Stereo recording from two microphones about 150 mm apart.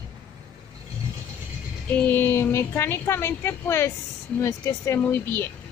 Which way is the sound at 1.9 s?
10° left (ahead or behind).